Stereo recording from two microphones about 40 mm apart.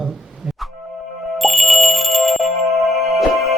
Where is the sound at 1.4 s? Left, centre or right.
Centre.